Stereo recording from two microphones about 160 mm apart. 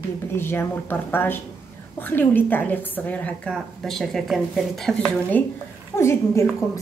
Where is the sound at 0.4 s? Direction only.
15° left (ahead or behind).